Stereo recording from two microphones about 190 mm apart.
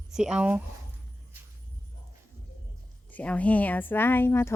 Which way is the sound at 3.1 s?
10° left (ahead or behind).